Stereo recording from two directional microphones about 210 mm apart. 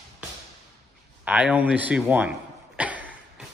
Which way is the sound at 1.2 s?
5° right (ahead or behind).